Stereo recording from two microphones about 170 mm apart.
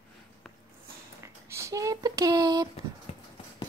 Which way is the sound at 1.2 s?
15° right (ahead or behind).